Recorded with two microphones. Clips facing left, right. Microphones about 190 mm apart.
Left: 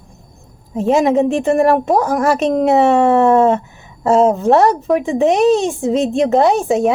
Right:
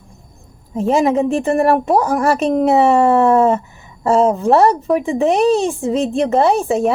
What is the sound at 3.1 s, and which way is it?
Speech, centre (ahead or behind).